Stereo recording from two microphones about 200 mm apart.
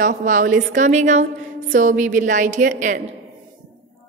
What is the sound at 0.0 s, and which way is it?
A woman's voice, 40° right (ahead or behind).